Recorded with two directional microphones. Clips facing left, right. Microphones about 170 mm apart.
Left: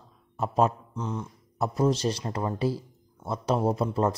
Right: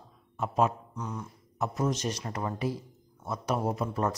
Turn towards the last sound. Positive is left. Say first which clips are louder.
# left 5 dB
turn(degrees=30)  # may be behind; listen again after turning